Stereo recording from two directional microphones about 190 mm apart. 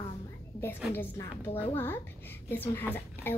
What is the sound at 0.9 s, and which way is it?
A woman's voice, 10° left (ahead or behind).